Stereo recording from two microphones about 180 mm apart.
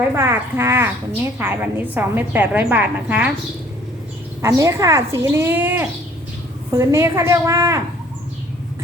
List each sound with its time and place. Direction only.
0.2 s a woman's voice: 15° right (ahead or behind)
4.4 s a woman's voice: 15° right (ahead or behind)